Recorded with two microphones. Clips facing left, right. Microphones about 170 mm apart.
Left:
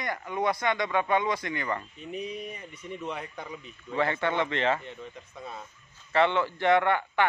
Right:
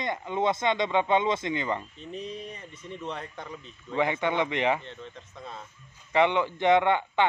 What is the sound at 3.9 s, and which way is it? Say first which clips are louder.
Speech: right 1 dB; 15° right (ahead or behind).